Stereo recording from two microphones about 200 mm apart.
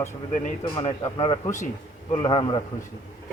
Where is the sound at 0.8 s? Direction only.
25° left (ahead or behind).